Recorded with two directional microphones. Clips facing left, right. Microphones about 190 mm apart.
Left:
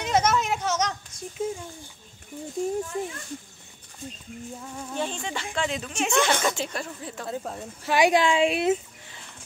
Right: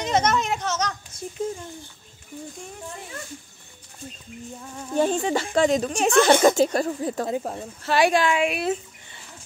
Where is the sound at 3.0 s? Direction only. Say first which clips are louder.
Left 11 dB; 30° left (ahead or behind).